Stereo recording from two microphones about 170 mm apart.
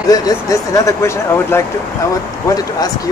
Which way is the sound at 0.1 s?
20° left (ahead or behind).